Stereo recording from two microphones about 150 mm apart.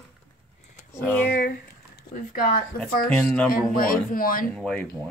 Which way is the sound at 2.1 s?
90° left.